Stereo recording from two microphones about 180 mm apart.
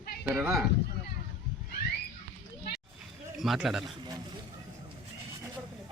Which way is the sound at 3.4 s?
Centre (ahead or behind).